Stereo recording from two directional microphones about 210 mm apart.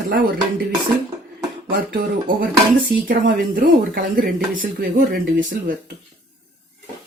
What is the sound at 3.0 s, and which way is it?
Speech, 45° right (ahead or behind).